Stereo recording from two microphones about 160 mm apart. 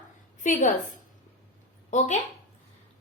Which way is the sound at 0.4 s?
50° left (ahead or behind).